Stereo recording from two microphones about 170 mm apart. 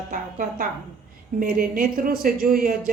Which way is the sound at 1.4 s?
55° right (ahead or behind).